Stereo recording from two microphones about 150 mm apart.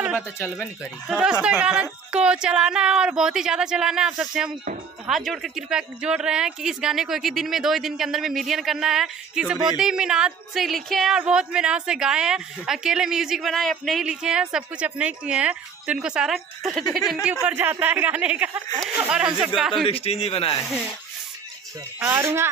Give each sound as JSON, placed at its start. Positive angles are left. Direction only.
{"t": 1.0, "sound": "a woman's voice", "side_deg": -5}
{"t": 17.3, "sound": "a woman's voice", "side_deg": -10}
{"t": 19.8, "sound": "speech", "side_deg": 40}
{"t": 22.0, "sound": "speech", "side_deg": -15}